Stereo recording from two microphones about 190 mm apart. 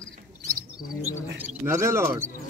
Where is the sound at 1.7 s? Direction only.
15° right (ahead or behind).